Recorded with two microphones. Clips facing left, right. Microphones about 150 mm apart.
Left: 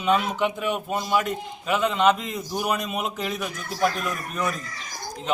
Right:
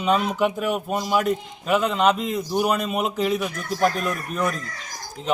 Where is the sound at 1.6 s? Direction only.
Centre (ahead or behind).